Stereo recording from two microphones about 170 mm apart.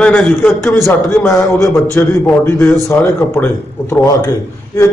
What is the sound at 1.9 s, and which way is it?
A man's voice, 10° left (ahead or behind).